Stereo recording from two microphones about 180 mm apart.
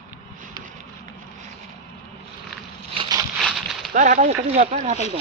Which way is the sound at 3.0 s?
20° right (ahead or behind).